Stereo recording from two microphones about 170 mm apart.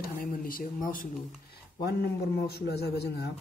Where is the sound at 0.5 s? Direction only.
55° left (ahead or behind).